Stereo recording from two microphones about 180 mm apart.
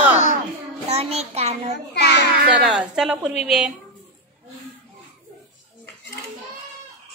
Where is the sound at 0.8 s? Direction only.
35° right (ahead or behind).